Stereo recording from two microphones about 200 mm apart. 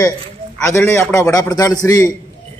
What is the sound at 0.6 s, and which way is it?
A man's voice, 15° left (ahead or behind).